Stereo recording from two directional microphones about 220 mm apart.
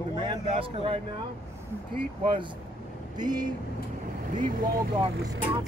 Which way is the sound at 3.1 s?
20° right (ahead or behind).